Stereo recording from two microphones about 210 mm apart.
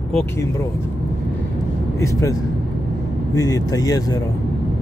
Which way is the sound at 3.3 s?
15° left (ahead or behind).